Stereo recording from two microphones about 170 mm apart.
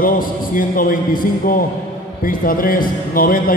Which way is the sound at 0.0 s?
55° left (ahead or behind).